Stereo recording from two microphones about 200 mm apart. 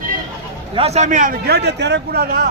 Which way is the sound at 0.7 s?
30° right (ahead or behind).